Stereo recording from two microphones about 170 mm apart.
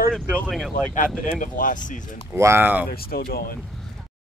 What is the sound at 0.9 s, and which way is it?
Speech, 50° left (ahead or behind).